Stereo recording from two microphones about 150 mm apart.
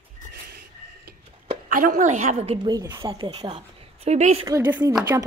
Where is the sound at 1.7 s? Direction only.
60° right (ahead or behind); by 2.6 s 40° right (ahead or behind).